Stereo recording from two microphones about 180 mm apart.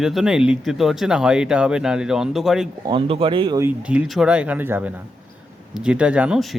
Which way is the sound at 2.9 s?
30° right (ahead or behind).